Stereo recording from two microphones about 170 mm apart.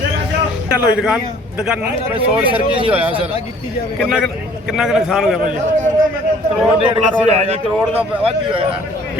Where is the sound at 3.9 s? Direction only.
Centre (ahead or behind).